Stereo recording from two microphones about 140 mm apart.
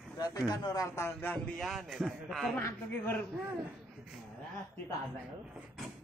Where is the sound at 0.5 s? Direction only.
25° left (ahead or behind).